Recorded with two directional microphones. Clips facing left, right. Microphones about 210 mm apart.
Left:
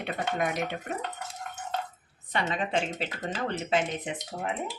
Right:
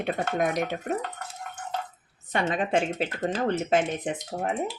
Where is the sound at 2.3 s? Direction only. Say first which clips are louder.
Right 4 dB; 45° right (ahead or behind).